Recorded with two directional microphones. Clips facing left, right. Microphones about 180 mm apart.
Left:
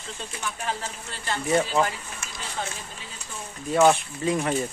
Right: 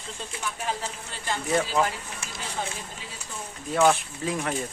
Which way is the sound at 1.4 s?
Centre (ahead or behind).